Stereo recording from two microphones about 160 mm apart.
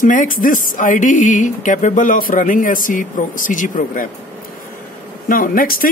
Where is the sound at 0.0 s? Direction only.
55° left (ahead or behind).